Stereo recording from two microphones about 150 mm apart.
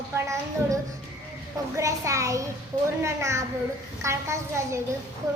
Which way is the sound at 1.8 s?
20° right (ahead or behind).